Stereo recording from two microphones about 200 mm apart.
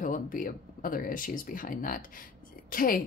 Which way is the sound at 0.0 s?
40° left (ahead or behind).